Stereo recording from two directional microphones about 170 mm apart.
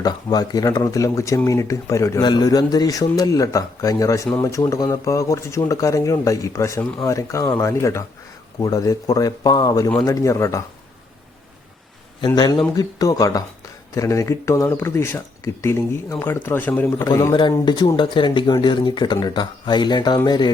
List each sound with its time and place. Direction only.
0.0 s speech: 20° left (ahead or behind)
12.2 s speech: 25° left (ahead or behind)